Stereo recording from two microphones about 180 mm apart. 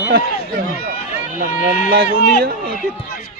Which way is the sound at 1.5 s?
45° left (ahead or behind).